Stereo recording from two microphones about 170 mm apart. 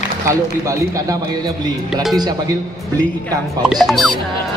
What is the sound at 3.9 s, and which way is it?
Music, centre (ahead or behind).